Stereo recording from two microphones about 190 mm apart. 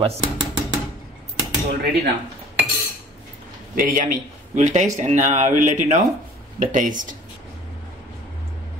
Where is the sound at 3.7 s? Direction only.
45° right (ahead or behind).